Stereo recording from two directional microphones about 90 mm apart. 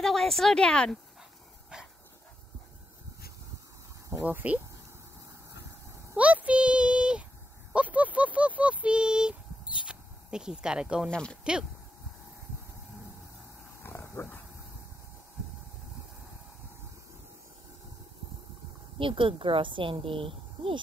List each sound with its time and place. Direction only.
0.0 s speech: 5° left (ahead or behind)
4.2 s speech: 20° right (ahead or behind)
6.1 s speech: 15° right (ahead or behind)
9.8 s a sound: 10° right (ahead or behind)
11.1 s speech: 10° left (ahead or behind)
13.8 s dog: 25° left (ahead or behind)
18.9 s a woman's voice: 75° right (ahead or behind)